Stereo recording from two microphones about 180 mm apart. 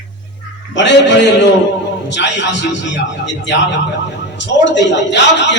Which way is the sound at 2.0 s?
80° left.